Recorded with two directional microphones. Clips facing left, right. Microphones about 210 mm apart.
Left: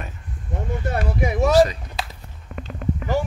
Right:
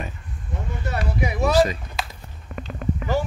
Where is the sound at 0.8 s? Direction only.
50° left (ahead or behind).